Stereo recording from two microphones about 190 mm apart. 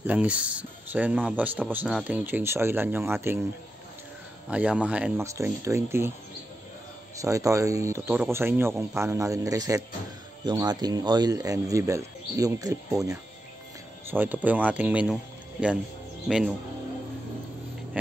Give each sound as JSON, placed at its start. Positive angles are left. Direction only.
{"t": 0.0, "sound": "speech", "side_deg": -5}
{"t": 4.5, "sound": "speech", "side_deg": -5}
{"t": 7.2, "sound": "speech", "side_deg": -15}
{"t": 16.3, "sound": "speech", "side_deg": -5}